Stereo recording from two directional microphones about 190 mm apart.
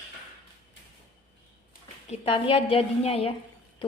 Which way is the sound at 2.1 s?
30° left (ahead or behind).